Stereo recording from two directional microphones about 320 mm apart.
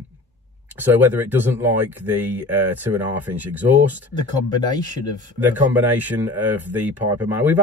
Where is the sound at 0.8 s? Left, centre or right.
Centre.